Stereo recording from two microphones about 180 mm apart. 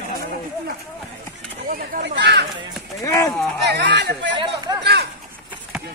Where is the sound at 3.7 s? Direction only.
70° right (ahead or behind).